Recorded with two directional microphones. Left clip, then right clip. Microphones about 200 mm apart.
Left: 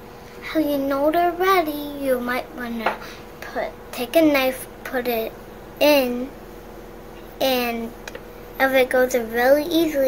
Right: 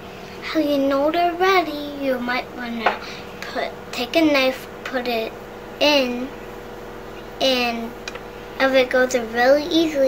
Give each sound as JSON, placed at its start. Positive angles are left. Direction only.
{"t": 0.5, "sound": "child singing", "side_deg": 30}
{"t": 3.5, "sound": "a woman's voice", "side_deg": 30}
{"t": 7.3, "sound": "child singing", "side_deg": 35}